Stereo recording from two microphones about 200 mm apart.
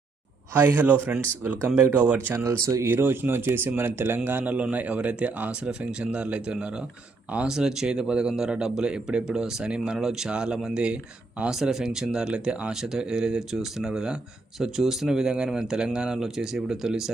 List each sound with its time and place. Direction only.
0.5 s speech: 10° right (ahead or behind)